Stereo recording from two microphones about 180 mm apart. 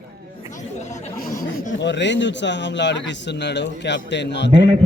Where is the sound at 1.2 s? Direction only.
55° left (ahead or behind).